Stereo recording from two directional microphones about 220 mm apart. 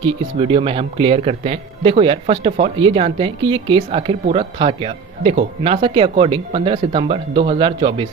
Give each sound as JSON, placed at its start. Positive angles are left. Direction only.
{"t": 0.0, "sound": "speech", "side_deg": -25}